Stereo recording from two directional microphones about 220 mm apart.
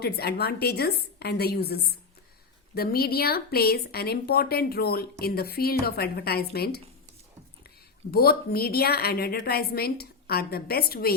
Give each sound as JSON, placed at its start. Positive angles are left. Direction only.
{"t": 0.0, "sound": "a woman's voice", "side_deg": 45}
{"t": 8.1, "sound": "a woman's voice", "side_deg": 45}